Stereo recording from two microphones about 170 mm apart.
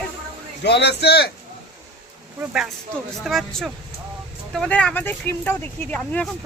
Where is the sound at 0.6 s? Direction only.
90° left; by 1.3 s 70° left (ahead or behind).